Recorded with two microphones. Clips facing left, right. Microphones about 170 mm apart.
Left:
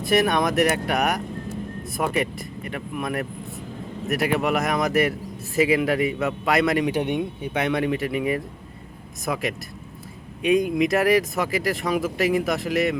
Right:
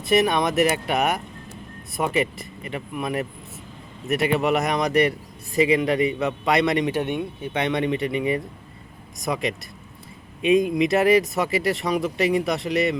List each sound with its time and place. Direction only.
0.0 s a man's voice: centre (ahead or behind)